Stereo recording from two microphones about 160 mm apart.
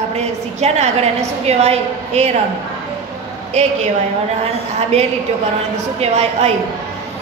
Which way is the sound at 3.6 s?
45° right (ahead or behind).